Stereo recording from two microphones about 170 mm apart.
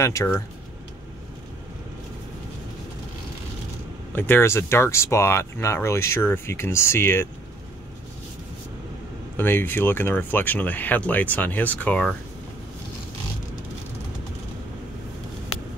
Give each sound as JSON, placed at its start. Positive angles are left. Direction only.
{"t": 0.0, "sound": "speech", "side_deg": 15}
{"t": 4.1, "sound": "speech", "side_deg": 10}
{"t": 9.4, "sound": "speech", "side_deg": 10}